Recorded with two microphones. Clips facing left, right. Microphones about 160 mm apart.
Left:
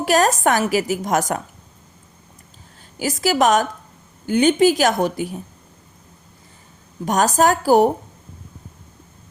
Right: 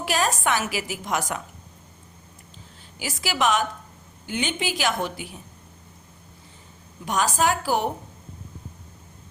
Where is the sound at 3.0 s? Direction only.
40° left (ahead or behind).